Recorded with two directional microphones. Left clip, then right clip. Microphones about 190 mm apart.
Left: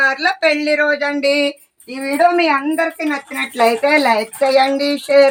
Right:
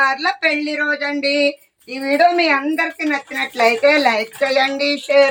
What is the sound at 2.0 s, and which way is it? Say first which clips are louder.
Speech: even; centre (ahead or behind).